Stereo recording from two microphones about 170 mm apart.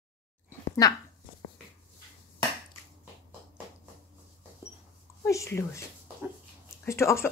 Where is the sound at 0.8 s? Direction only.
20° left (ahead or behind).